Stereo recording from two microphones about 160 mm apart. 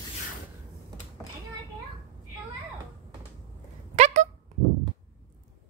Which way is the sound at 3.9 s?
45° right (ahead or behind).